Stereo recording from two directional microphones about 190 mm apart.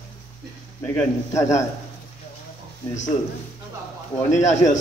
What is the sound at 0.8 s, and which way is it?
Speech, 15° left (ahead or behind).